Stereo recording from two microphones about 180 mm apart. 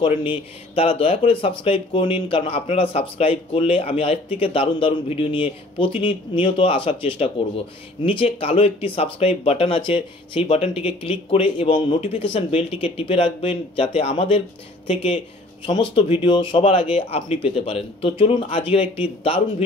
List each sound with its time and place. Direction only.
0.0 s a man's voice: 30° left (ahead or behind)
15.6 s a man's voice: 30° left (ahead or behind)